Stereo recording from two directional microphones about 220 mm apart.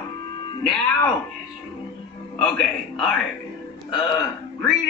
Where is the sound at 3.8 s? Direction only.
20° left (ahead or behind).